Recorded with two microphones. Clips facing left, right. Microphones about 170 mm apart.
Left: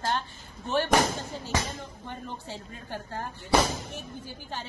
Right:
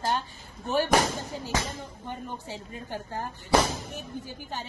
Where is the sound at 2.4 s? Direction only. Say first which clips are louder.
Right 2 dB; 15° right (ahead or behind).